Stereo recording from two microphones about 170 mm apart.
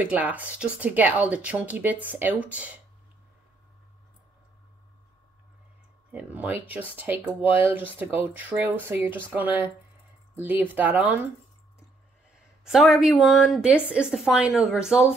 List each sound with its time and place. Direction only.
0.0 s speech: 10° right (ahead or behind)
6.1 s speech: 10° right (ahead or behind)
12.6 s a woman's voice: centre (ahead or behind)